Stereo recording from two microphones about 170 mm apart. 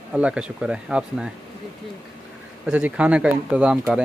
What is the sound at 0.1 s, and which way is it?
Speech, 5° right (ahead or behind).